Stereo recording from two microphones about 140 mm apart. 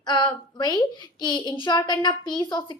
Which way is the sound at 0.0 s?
30° left (ahead or behind).